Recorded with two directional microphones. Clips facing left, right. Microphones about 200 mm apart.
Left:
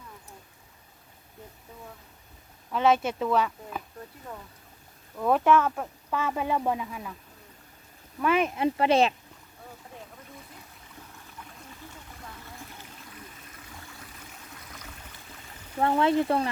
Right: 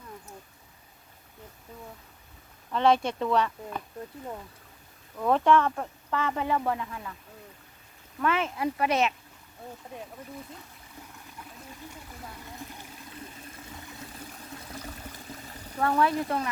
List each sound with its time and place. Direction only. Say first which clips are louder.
2.7 s speech: even; 5° left (ahead or behind)
5.1 s speech: even; 5° left (ahead or behind)
8.2 s speech: left 3 dB; 15° left (ahead or behind); by 9.1 s 30° left (ahead or behind)
14.7 s pour: right 7 dB; 30° right (ahead or behind)
15.8 s speech: left 2 dB; 25° left (ahead or behind)